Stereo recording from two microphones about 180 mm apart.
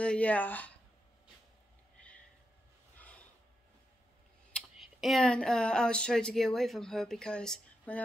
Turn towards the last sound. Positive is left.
turn(degrees=5)  # may be behind; listen again after turning